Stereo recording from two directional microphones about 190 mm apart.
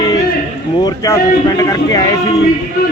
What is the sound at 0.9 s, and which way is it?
Speech, 20° left (ahead or behind).